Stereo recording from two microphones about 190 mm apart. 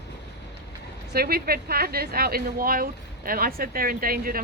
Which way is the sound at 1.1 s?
55° right (ahead or behind).